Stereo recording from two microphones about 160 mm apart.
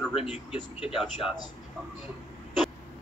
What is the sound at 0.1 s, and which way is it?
Speech, 35° left (ahead or behind).